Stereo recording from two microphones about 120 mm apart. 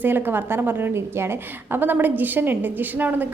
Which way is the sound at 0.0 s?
15° right (ahead or behind).